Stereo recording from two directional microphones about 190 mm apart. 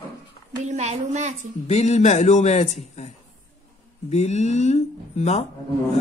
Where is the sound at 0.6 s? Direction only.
40° right (ahead or behind).